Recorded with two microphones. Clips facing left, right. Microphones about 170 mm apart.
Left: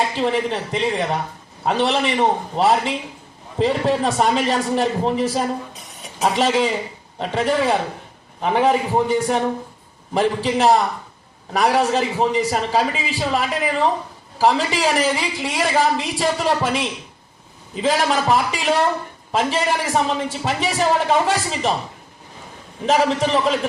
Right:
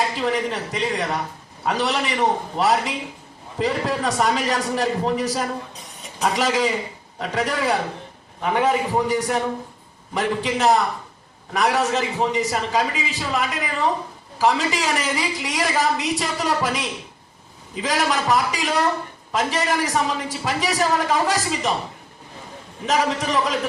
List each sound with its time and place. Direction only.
0.2 s a woman's voice: 30° left (ahead or behind)
22.9 s a woman's voice: 30° left (ahead or behind)